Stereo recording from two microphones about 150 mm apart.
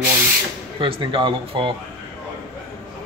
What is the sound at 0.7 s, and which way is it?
Speech, 35° right (ahead or behind).